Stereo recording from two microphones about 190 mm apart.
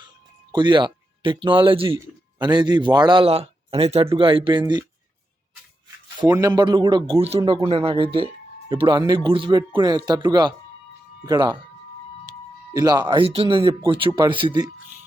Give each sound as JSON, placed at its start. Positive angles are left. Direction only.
{"t": 0.5, "sound": "a man's voice", "side_deg": -25}
{"t": 6.2, "sound": "a man's voice", "side_deg": -20}
{"t": 12.7, "sound": "a man's voice", "side_deg": -20}